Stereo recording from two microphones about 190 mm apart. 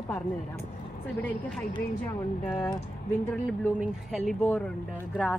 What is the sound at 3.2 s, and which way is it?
Speech, 10° left (ahead or behind).